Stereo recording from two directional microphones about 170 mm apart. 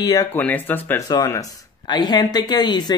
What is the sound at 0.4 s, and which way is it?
Speech, 10° left (ahead or behind).